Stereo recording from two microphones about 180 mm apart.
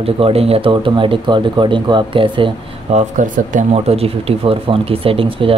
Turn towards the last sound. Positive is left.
turn(degrees=-30)  # may be behind; listen again after turning